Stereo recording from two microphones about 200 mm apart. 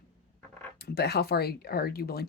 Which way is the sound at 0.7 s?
55° left (ahead or behind).